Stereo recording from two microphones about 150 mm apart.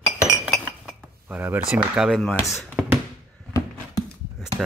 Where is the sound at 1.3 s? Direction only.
10° right (ahead or behind).